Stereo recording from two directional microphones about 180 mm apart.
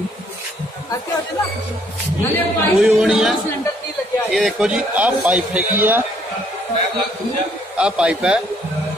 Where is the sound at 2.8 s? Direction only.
5° right (ahead or behind).